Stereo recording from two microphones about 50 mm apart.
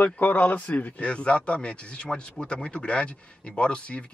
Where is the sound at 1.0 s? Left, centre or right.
Left.